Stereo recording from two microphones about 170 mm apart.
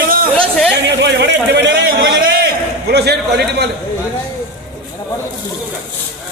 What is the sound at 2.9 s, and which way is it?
Speech, 75° right (ahead or behind).